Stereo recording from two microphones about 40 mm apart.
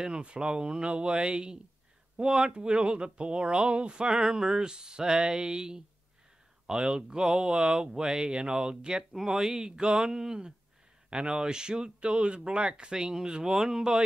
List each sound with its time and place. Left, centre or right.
0.2 s speech: right
9.1 s speech: centre; by 12.9 s right
12.9 s speech: centre